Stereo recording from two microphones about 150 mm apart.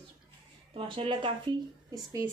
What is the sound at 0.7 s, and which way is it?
Speech, 35° right (ahead or behind).